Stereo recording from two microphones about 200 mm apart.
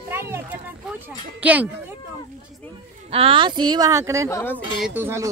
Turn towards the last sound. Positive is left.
turn(degrees=-10)  # may be behind; listen again after turning